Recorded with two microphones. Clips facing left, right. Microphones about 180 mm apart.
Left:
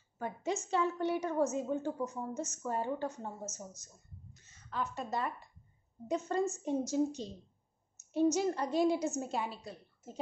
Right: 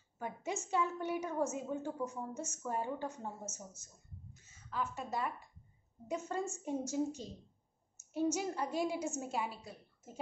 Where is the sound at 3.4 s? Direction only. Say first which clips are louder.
Left 3 dB; 35° left (ahead or behind).